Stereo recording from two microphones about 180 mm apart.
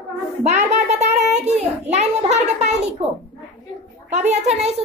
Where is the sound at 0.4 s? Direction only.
40° right (ahead or behind).